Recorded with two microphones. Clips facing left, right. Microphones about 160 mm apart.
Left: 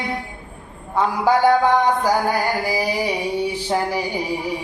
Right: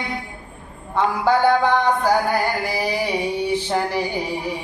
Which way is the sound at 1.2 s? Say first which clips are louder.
Left 2 dB; 10° left (ahead or behind).